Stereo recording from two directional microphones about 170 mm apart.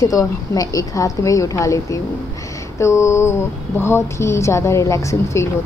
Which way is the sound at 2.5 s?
15° left (ahead or behind).